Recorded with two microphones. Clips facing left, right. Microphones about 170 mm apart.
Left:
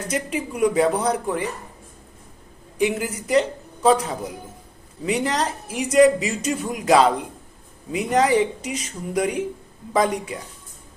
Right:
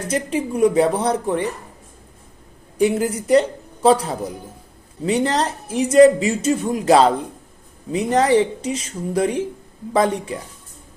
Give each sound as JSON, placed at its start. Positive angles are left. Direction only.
{"t": 0.1, "sound": "speech", "side_deg": -30}
{"t": 2.7, "sound": "speech", "side_deg": -35}